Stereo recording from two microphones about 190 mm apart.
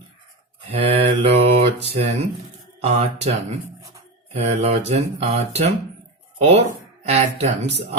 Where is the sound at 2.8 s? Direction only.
35° right (ahead or behind).